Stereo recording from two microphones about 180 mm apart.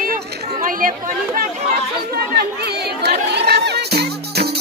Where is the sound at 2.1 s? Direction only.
60° right (ahead or behind).